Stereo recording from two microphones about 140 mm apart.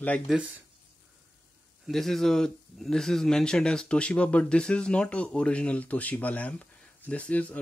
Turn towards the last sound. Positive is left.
turn(degrees=10)  # may be behind; listen again after turning